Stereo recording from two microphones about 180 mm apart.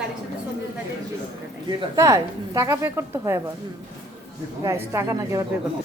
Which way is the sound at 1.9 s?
15° right (ahead or behind).